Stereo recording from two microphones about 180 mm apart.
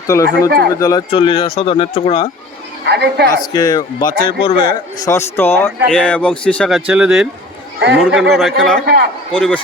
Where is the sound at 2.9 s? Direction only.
65° right (ahead or behind).